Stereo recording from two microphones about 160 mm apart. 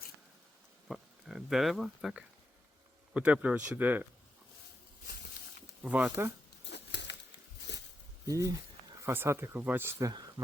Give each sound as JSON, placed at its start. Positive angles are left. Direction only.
{"t": 0.9, "sound": "speech", "side_deg": -5}
{"t": 5.8, "sound": "speech", "side_deg": -10}
{"t": 6.7, "sound": "a sound", "side_deg": 90}
{"t": 8.3, "sound": "speech", "side_deg": -20}
{"t": 10.1, "sound": "speech", "side_deg": -25}